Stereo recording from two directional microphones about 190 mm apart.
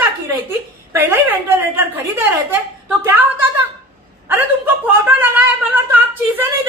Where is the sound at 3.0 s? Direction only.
10° right (ahead or behind).